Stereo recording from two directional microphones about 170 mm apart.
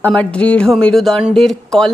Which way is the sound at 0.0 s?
10° left (ahead or behind).